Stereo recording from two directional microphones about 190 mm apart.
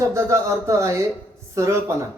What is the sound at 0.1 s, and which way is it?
Speech, 15° right (ahead or behind).